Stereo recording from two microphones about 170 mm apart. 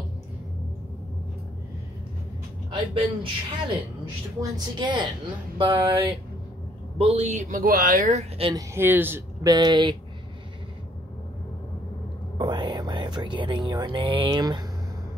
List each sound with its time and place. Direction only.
2.7 s speech: 30° right (ahead or behind)
4.4 s speech: 25° right (ahead or behind)
5.6 s a sound: 30° right (ahead or behind)
7.0 s speech: 35° right (ahead or behind)
8.5 s speech: 15° right (ahead or behind)
12.4 s speech: 25° right (ahead or behind)